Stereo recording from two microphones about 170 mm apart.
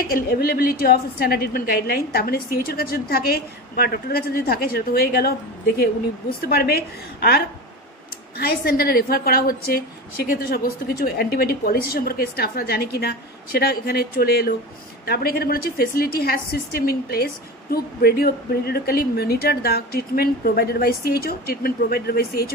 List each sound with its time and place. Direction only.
0.1 s a woman's voice: 65° left (ahead or behind)
6.4 s a woman's voice: 65° left (ahead or behind)
8.4 s a woman's voice: 65° left (ahead or behind)